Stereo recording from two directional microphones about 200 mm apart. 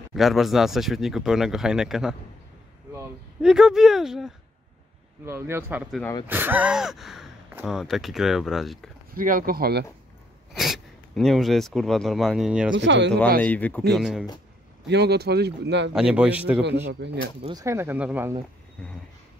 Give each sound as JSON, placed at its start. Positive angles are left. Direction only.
{"t": 0.1, "sound": "speech", "side_deg": 0}
{"t": 9.1, "sound": "speech", "side_deg": -45}
{"t": 10.5, "sound": "speech", "side_deg": 0}
{"t": 12.7, "sound": "speech", "side_deg": -60}
{"t": 13.4, "sound": "speech", "side_deg": 5}
{"t": 14.9, "sound": "speech", "side_deg": -55}
{"t": 15.9, "sound": "speech", "side_deg": -5}
{"t": 17.0, "sound": "speech", "side_deg": -60}
{"t": 17.4, "sound": "speech", "side_deg": -20}